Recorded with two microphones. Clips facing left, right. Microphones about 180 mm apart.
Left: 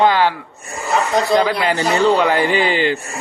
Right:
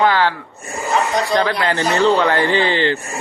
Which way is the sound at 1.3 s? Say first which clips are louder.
Left 1 dB; 10° left (ahead or behind).